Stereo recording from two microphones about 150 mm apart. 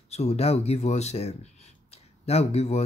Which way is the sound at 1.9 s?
45° left (ahead or behind).